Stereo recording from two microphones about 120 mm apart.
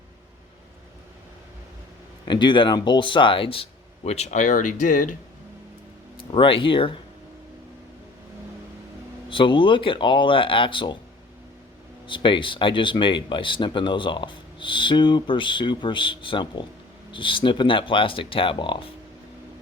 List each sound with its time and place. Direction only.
2.2 s speech: 40° left (ahead or behind); by 5.1 s 90° left
6.3 s speech: 45° left (ahead or behind)
9.3 s speech: 45° left (ahead or behind)
12.0 s speech: 45° left (ahead or behind)